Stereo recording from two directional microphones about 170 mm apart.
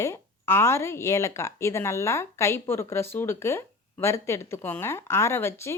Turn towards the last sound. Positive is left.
turn(degrees=15)  # may be behind; listen again after turning